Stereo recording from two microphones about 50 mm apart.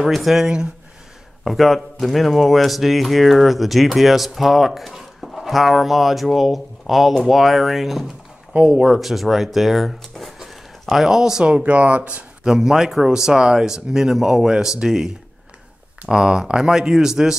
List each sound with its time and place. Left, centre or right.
0.0 s speech: centre
1.4 s speech: centre
8.5 s speech: right
8.8 s speech: centre
11.4 s speech: right
12.4 s speech: centre